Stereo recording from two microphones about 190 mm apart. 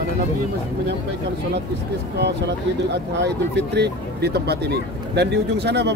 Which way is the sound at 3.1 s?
65° right (ahead or behind).